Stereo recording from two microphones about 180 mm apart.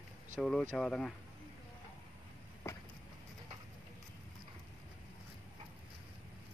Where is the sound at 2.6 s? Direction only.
15° left (ahead or behind).